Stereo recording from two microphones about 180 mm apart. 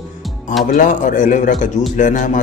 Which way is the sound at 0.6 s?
45° left (ahead or behind).